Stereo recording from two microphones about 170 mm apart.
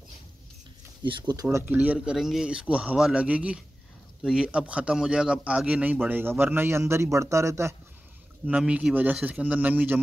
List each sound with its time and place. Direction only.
1.0 s speech: 25° right (ahead or behind)
1.8 s speech: 5° right (ahead or behind)